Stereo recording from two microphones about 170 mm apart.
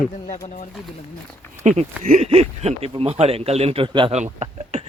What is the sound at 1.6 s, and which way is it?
Speech, 45° right (ahead or behind).